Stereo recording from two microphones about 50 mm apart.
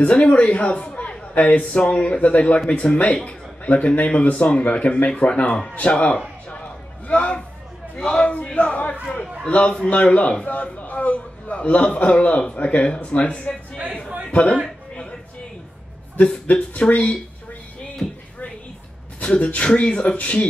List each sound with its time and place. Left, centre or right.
0.0 s a man's voice: left
1.6 s a man's voice: centre
7.9 s a sound: left
9.5 s a man's voice: left
16.4 s speech: left
19.1 s a man's voice: left